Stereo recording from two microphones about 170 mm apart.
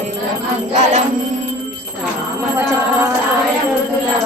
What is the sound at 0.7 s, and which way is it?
Music, 40° right (ahead or behind).